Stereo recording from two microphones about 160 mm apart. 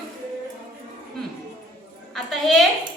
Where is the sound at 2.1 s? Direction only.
Centre (ahead or behind).